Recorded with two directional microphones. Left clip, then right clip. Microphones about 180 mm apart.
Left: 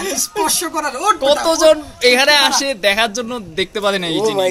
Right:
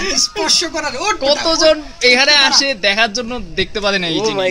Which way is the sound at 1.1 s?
10° left (ahead or behind).